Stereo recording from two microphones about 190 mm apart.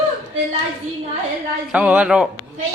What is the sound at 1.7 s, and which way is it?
Speech, 5° right (ahead or behind).